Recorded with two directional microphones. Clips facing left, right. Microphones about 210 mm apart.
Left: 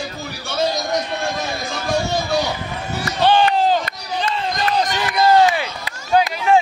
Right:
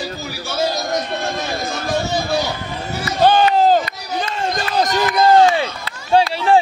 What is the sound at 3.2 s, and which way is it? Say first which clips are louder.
Chop: right 2 dB; 40° right (ahead or behind).